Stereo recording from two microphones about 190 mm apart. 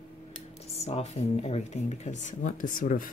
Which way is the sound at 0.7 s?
35° left (ahead or behind).